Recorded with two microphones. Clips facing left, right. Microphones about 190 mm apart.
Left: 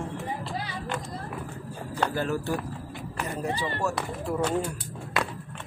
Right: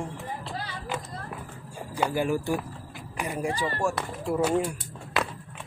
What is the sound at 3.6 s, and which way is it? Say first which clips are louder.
Speech: right 1 dB; 15° right (ahead or behind).